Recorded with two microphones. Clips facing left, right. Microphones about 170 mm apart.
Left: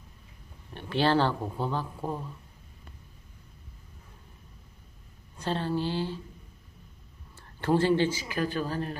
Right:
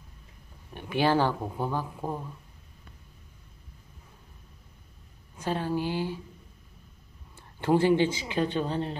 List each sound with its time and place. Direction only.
0.7 s speech: 10° right (ahead or behind)
5.4 s speech: 10° right (ahead or behind)
7.3 s speech: 15° right (ahead or behind)